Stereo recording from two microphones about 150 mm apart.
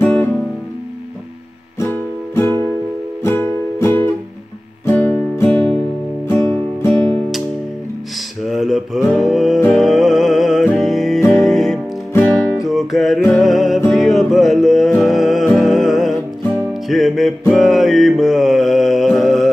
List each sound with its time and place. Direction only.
0.0 s music: 15° left (ahead or behind)
1.8 s music: 15° left (ahead or behind)
8.5 s music: centre (ahead or behind)